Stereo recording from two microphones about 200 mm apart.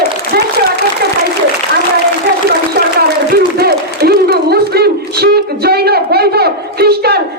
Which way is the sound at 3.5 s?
50° right (ahead or behind).